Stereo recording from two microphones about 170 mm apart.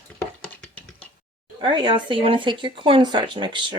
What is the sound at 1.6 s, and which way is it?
Speech, 30° right (ahead or behind).